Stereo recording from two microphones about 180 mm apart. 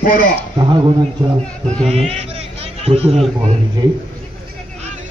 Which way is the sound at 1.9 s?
35° right (ahead or behind).